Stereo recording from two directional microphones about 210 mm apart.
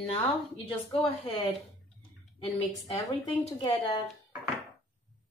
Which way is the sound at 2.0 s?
25° left (ahead or behind).